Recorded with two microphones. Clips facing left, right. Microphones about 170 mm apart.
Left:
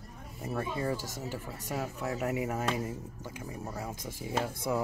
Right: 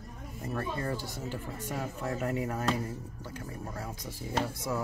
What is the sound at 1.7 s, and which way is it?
Speech, 5° left (ahead or behind).